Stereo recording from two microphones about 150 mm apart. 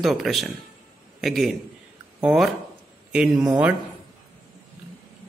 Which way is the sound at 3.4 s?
15° right (ahead or behind).